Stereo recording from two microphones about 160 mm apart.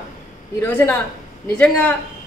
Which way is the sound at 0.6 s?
15° left (ahead or behind).